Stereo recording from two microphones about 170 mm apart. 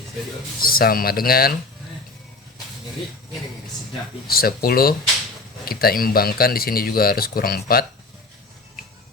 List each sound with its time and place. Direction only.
0.6 s speech: 60° left (ahead or behind)
4.3 s speech: 60° left (ahead or behind)